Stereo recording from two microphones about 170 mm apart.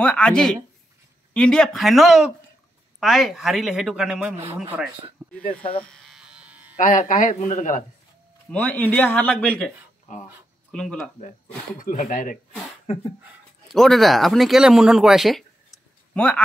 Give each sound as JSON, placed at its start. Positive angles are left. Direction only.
{"t": 0.0, "sound": "speech", "side_deg": 5}
{"t": 5.2, "sound": "a sound", "side_deg": -5}
{"t": 5.9, "sound": "electric shaver", "side_deg": 0}
{"t": 6.8, "sound": "speech", "side_deg": 50}
{"t": 8.5, "sound": "speech", "side_deg": 10}
{"t": 10.7, "sound": "speech", "side_deg": 5}
{"t": 11.8, "sound": "speech", "side_deg": 50}
{"t": 12.8, "sound": "speech", "side_deg": 35}
{"t": 13.7, "sound": "speech", "side_deg": 0}